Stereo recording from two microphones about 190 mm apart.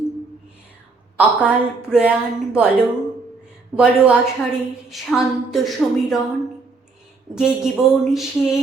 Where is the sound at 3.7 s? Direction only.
5° right (ahead or behind).